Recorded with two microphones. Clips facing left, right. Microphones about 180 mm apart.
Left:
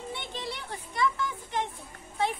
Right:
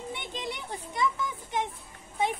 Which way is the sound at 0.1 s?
15° right (ahead or behind).